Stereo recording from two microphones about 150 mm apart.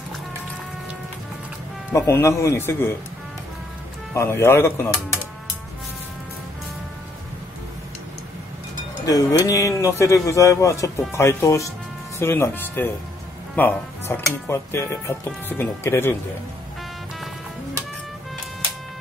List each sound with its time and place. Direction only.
1.9 s speech: 15° left (ahead or behind)
4.1 s speech: 15° left (ahead or behind)
9.0 s speech: 25° left (ahead or behind)